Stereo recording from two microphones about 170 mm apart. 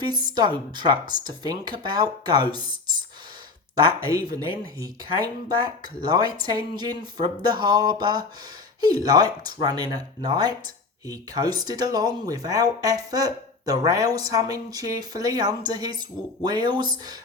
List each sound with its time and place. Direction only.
0.0 s speech: 25° right (ahead or behind)
3.8 s speech: 25° right (ahead or behind)